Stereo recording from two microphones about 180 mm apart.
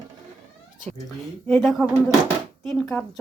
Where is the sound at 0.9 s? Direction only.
10° left (ahead or behind).